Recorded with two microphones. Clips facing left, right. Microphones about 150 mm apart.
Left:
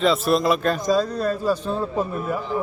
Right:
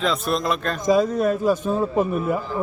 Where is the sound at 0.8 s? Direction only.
20° right (ahead or behind).